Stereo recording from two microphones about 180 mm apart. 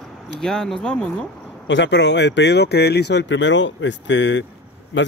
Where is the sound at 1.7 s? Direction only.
80° left.